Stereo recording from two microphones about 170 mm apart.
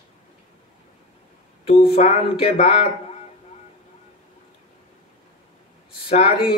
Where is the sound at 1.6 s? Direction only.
35° left (ahead or behind).